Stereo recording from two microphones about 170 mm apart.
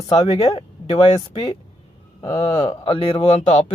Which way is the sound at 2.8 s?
35° left (ahead or behind).